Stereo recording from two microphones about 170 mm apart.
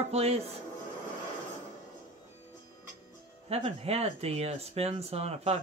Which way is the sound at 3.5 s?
35° right (ahead or behind).